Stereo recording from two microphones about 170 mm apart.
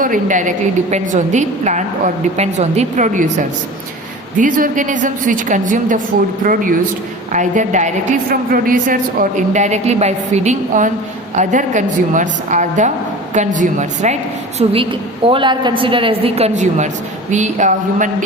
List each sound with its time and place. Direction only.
0.0 s a woman's voice: 50° right (ahead or behind)
4.4 s a woman's voice: 50° right (ahead or behind)
14.6 s a woman's voice: 35° right (ahead or behind)